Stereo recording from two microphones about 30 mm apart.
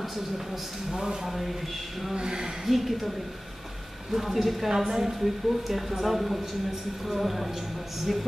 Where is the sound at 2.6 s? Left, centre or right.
Centre.